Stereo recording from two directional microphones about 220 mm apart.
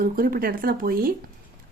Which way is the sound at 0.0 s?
40° right (ahead or behind).